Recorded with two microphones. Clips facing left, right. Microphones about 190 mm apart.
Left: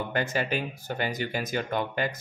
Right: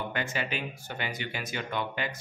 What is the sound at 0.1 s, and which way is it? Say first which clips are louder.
Speech: left 5 dB; 40° left (ahead or behind).